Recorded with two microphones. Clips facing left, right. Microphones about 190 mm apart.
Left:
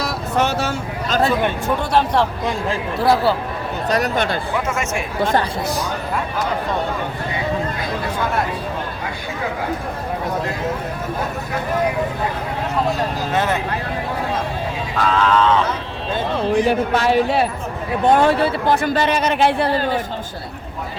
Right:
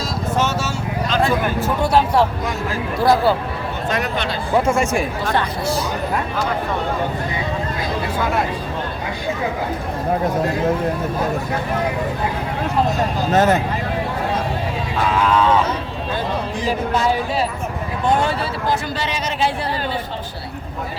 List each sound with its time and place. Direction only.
0.0 s vehicle: 60° left (ahead or behind); by 1.3 s 45° left (ahead or behind)
1.6 s speech: 5° right (ahead or behind)
3.8 s speech: 40° left (ahead or behind)
4.5 s speech: 30° right (ahead or behind)
13.3 s speech: 40° right (ahead or behind)
15.1 s speech: 10° right (ahead or behind)
16.6 s speech: 70° left (ahead or behind)